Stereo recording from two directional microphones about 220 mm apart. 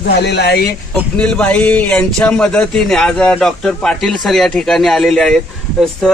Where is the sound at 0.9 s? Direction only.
5° left (ahead or behind).